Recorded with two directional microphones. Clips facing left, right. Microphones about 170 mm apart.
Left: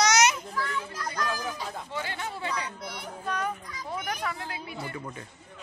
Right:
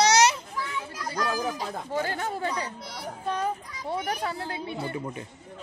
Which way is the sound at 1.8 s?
45° right (ahead or behind).